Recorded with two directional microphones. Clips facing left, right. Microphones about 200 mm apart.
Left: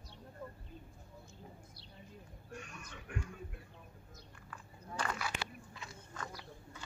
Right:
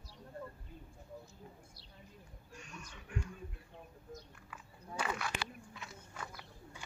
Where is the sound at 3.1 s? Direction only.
55° left (ahead or behind).